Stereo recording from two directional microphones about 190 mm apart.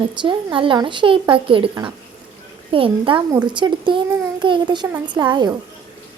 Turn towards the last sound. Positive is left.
turn(degrees=-20)  # may be behind; listen again after turning